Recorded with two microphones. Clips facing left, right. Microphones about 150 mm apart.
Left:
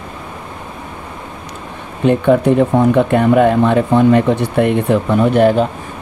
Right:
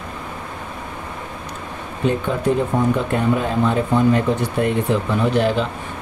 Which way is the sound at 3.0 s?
70° left (ahead or behind).